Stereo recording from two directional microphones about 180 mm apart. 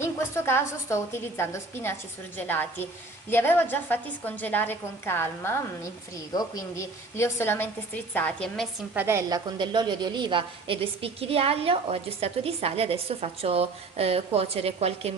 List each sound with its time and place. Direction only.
0.0 s a woman's voice: 15° left (ahead or behind)
8.9 s a woman's voice: 15° right (ahead or behind)
9.6 s a woman's voice: 25° right (ahead or behind)